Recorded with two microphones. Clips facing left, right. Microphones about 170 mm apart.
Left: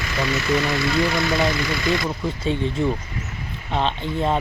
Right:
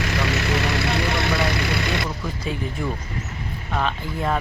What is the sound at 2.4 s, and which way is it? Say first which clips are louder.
Speech: left 6 dB; 25° left (ahead or behind).